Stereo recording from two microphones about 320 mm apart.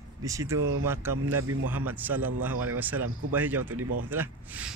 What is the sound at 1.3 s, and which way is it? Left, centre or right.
Speech, right.